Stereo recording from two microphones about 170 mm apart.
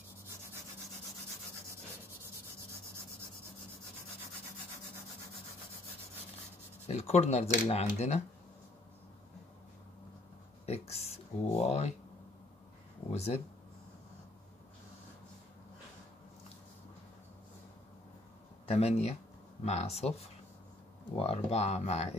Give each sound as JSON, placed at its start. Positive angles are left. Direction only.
{"t": 6.9, "sound": "speech", "side_deg": 40}
{"t": 10.6, "sound": "a sound", "side_deg": 40}
{"t": 11.6, "sound": "speech", "side_deg": 40}
{"t": 13.1, "sound": "speech", "side_deg": 40}
{"t": 18.7, "sound": "speech", "side_deg": 35}
{"t": 21.2, "sound": "speech", "side_deg": 35}